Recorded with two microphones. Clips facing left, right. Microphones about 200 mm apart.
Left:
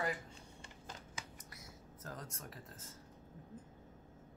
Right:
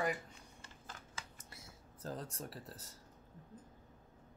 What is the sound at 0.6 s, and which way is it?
Shuffling cards, 15° left (ahead or behind).